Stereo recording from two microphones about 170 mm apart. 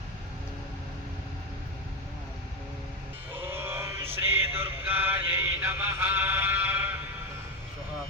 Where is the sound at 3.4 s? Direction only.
15° right (ahead or behind).